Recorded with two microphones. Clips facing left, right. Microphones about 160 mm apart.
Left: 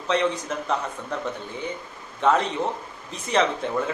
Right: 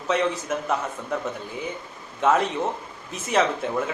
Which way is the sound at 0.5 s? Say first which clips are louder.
Right 2 dB; 5° right (ahead or behind).